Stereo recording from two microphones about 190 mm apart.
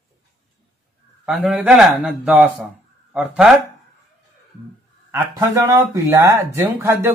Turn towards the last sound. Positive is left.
turn(degrees=-15)  # may be behind; listen again after turning